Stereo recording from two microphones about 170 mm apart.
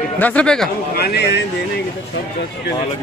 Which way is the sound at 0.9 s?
75° left (ahead or behind).